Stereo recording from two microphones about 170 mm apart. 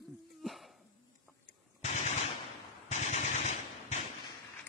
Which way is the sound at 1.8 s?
40° left (ahead or behind).